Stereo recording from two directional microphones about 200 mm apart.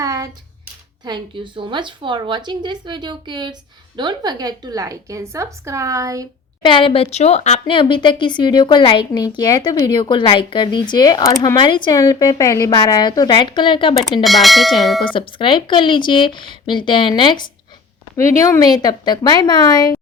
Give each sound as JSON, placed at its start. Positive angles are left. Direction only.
{"t": 0.0, "sound": "a sound", "side_deg": -15}
{"t": 1.0, "sound": "a woman's voice", "side_deg": -20}
{"t": 6.6, "sound": "speech", "side_deg": 25}
{"t": 14.3, "sound": "speech", "side_deg": 0}
{"t": 15.1, "sound": "speech", "side_deg": 25}